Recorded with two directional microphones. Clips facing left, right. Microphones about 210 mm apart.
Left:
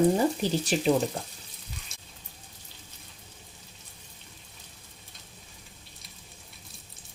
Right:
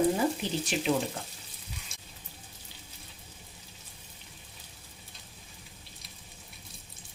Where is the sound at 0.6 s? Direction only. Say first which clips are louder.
Left 4 dB; 35° left (ahead or behind).